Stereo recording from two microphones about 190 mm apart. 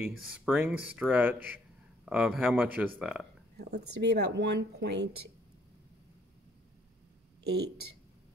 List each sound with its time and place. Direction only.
0.0 s speech: 10° right (ahead or behind)
3.5 s speech: 60° right (ahead or behind)
7.4 s speech: 55° right (ahead or behind)